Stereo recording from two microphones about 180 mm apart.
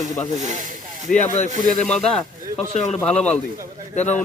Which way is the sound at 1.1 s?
45° left (ahead or behind).